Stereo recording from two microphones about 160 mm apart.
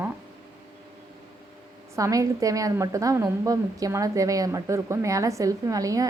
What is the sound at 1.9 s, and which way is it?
A woman's voice, 20° right (ahead or behind).